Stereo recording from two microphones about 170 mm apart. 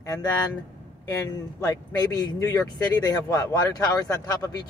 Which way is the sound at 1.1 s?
20° left (ahead or behind).